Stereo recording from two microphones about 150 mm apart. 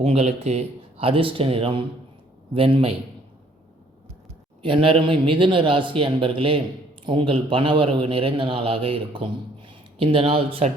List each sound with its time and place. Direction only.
0.0 s a man's voice: 45° right (ahead or behind)
4.6 s a man's voice: 35° right (ahead or behind)